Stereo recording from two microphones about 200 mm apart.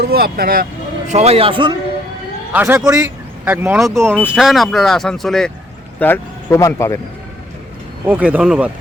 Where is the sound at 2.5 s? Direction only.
10° right (ahead or behind).